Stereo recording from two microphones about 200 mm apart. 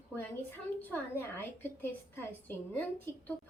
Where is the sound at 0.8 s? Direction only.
10° left (ahead or behind).